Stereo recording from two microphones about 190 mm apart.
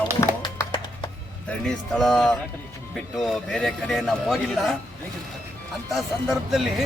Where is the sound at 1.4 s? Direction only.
Centre (ahead or behind).